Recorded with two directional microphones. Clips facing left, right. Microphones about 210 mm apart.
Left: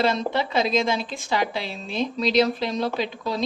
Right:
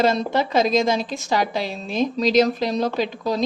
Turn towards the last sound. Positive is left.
turn(degrees=-45)  # may be behind; listen again after turning